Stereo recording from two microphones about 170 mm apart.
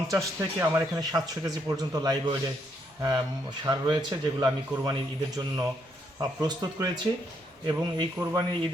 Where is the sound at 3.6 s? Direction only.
25° right (ahead or behind).